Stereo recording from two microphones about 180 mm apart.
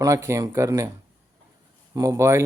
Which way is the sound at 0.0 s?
15° right (ahead or behind).